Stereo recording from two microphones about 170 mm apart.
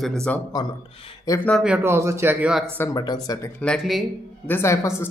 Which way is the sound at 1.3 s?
20° left (ahead or behind).